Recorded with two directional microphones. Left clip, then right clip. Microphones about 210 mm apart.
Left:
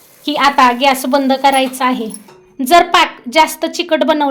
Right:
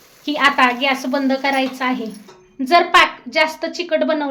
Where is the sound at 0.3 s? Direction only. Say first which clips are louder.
Left 4 dB; 45° left (ahead or behind).